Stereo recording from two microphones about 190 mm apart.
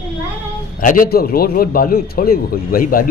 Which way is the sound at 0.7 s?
45° left (ahead or behind).